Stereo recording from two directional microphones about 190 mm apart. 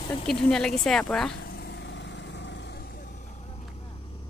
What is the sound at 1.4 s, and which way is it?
Vehicle, 60° left (ahead or behind).